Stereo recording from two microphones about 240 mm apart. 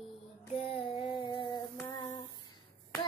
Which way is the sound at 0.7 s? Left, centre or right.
Left.